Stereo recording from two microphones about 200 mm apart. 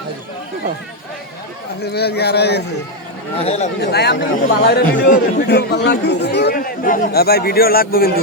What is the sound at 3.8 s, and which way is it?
Speech, 55° left (ahead or behind).